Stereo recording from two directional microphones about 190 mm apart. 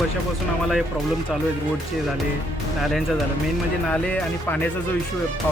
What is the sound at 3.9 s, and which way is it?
Speech, 5° left (ahead or behind).